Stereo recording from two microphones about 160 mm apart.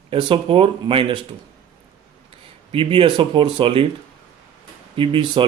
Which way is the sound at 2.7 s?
35° right (ahead or behind).